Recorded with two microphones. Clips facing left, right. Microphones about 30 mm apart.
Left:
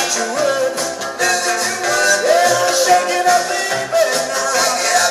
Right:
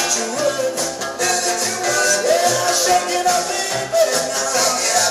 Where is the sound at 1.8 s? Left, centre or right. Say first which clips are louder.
Left 3 dB; centre.